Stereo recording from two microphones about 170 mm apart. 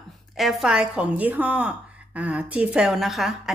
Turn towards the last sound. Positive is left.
turn(degrees=0)  # may be behind; listen again after turning